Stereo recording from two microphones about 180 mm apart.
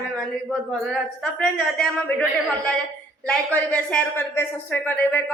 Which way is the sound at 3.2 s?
5° left (ahead or behind).